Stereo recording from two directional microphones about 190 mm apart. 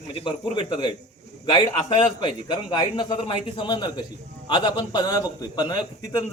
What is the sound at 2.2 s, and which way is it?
A man's voice, 25° left (ahead or behind).